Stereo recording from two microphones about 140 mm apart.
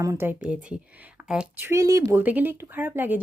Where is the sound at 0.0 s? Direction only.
20° right (ahead or behind).